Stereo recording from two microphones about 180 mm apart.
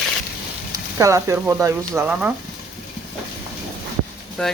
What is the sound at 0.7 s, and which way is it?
Speech, 20° right (ahead or behind).